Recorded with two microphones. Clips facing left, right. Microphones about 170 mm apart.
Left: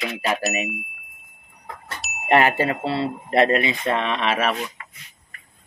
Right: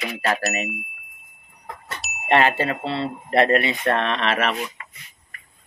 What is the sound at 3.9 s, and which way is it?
Mantra, 10° left (ahead or behind).